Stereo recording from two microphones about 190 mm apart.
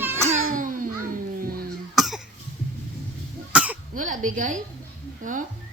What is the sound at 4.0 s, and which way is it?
Speech, 40° right (ahead or behind).